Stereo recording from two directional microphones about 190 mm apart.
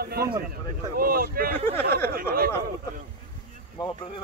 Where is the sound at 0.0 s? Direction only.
55° right (ahead or behind).